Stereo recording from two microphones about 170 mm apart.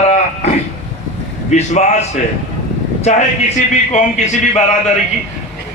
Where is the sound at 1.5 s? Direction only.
45° left (ahead or behind).